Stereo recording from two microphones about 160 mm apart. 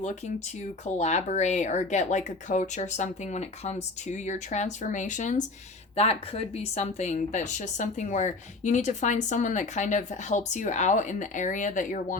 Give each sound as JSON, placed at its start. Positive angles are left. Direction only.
{"t": 0.9, "sound": "speech", "side_deg": 45}
{"t": 6.0, "sound": "speech", "side_deg": 40}